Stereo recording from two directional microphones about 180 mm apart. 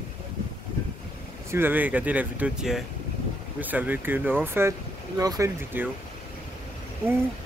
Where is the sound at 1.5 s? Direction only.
10° right (ahead or behind).